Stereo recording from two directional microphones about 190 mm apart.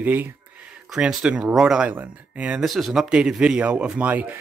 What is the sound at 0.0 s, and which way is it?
Speech, 10° right (ahead or behind).